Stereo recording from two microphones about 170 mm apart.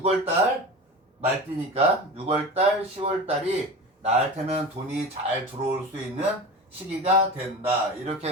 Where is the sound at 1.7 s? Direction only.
35° right (ahead or behind).